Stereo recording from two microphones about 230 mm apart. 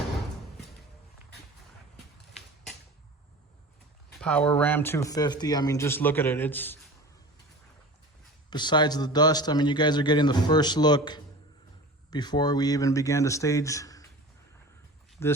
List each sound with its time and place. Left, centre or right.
4.2 s speech: centre
8.4 s a man's voice: centre
15.2 s speech: centre